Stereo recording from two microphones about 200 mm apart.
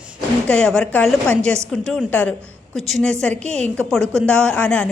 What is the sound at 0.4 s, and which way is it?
A woman's voice, 5° left (ahead or behind).